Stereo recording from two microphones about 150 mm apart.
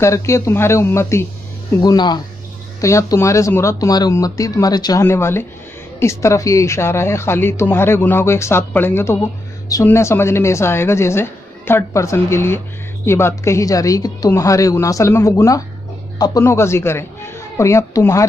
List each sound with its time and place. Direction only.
0.0 s a woman's voice: 20° left (ahead or behind)